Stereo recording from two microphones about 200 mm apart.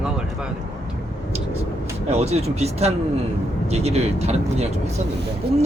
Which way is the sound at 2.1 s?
30° right (ahead or behind).